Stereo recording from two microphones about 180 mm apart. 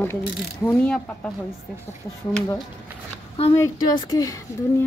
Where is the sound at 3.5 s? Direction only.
20° left (ahead or behind).